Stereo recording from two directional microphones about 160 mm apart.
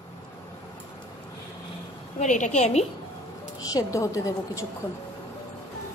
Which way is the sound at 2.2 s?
50° left (ahead or behind).